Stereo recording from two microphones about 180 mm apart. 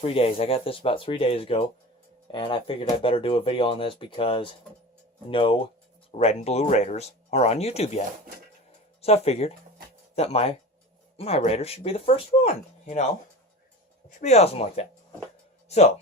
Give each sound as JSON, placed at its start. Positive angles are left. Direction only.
{"t": 0.0, "sound": "speech", "side_deg": 30}
{"t": 14.2, "sound": "speech", "side_deg": 35}